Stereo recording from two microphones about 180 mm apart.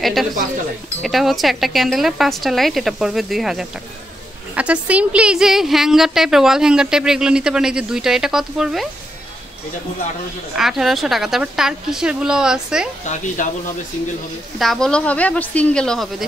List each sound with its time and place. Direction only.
0.0 s a sound: centre (ahead or behind)
1.0 s a woman's voice: centre (ahead or behind)
10.6 s a woman's voice: centre (ahead or behind)
13.0 s speech: 40° left (ahead or behind)
14.6 s a woman's voice: centre (ahead or behind)